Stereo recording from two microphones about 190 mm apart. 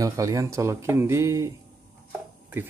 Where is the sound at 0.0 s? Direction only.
15° right (ahead or behind).